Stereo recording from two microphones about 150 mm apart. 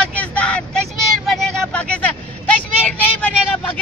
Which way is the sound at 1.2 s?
5° left (ahead or behind).